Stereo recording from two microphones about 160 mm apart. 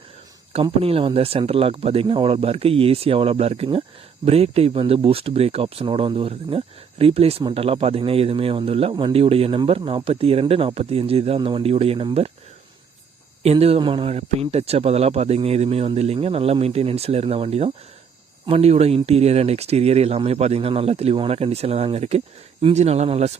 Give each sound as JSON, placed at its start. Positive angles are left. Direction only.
{"t": 0.5, "sound": "speech", "side_deg": -35}
{"t": 13.4, "sound": "speech", "side_deg": -40}